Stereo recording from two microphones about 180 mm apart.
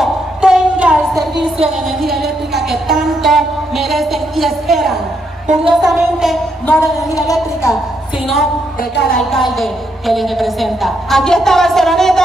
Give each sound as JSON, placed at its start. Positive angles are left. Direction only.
{"t": 0.0, "sound": "train", "side_deg": -5}
{"t": 1.6, "sound": "a woman's voice", "side_deg": 0}
{"t": 7.1, "sound": "speech", "side_deg": 20}
{"t": 9.1, "sound": "a woman's voice", "side_deg": 0}